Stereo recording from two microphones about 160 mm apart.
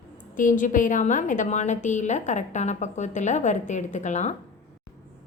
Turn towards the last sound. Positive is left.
turn(degrees=45)  # may be behind; listen again after turning